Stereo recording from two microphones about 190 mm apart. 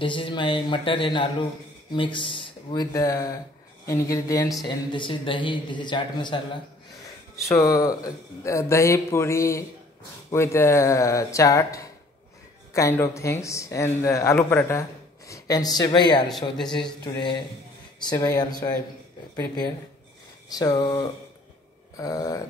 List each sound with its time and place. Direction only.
0.0 s a man's voice: 25° left (ahead or behind)
7.4 s speech: 15° left (ahead or behind)
16.3 s speech: centre (ahead or behind)
17.0 s a man's voice: 25° left (ahead or behind)
20.5 s a man's voice: 20° left (ahead or behind)